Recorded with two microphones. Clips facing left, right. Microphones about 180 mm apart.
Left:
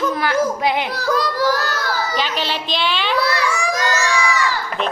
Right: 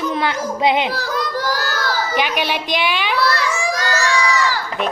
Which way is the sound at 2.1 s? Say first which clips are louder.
Right 2 dB; 15° right (ahead or behind).